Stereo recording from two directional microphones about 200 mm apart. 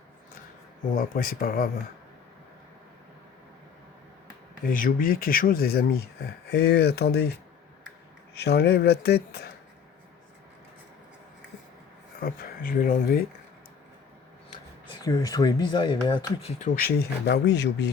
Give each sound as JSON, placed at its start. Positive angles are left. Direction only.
{"t": 0.9, "sound": "speech", "side_deg": 45}
{"t": 4.6, "sound": "speech", "side_deg": 45}
{"t": 8.4, "sound": "speech", "side_deg": 55}
{"t": 12.2, "sound": "speech", "side_deg": 45}
{"t": 15.0, "sound": "speech", "side_deg": 20}
{"t": 17.0, "sound": "speech", "side_deg": 55}